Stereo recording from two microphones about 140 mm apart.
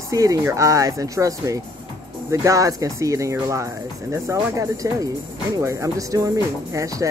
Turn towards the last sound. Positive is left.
turn(degrees=-25)  # may be behind; listen again after turning